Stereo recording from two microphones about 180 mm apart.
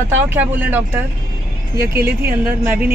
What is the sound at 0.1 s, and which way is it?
Speech, 10° right (ahead or behind).